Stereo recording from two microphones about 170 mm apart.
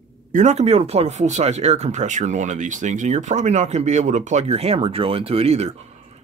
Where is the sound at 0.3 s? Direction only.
45° right (ahead or behind).